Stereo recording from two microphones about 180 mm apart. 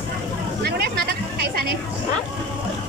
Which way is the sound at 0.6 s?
65° right (ahead or behind).